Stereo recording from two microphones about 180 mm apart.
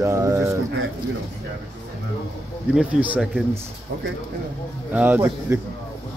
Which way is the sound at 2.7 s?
5° right (ahead or behind).